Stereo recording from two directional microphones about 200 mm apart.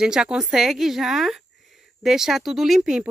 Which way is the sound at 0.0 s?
5° right (ahead or behind).